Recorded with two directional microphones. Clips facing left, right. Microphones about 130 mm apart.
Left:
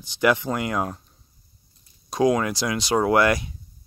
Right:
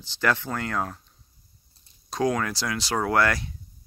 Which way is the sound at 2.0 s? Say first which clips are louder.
Left 5 dB; 15° left (ahead or behind).